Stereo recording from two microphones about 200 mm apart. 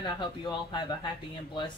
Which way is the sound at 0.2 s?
25° left (ahead or behind).